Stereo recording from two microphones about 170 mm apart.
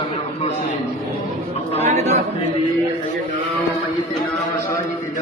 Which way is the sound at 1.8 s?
40° right (ahead or behind).